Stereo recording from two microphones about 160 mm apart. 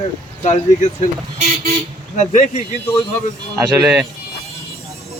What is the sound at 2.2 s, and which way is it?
Speech, 50° left (ahead or behind).